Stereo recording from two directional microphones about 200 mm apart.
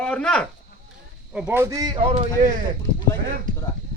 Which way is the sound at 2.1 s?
30° right (ahead or behind).